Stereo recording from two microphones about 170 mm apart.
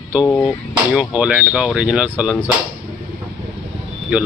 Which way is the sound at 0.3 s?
15° left (ahead or behind).